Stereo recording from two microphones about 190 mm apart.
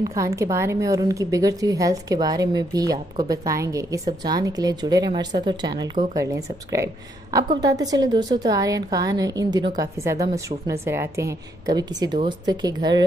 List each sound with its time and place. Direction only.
0.0 s a woman's voice: 15° right (ahead or behind)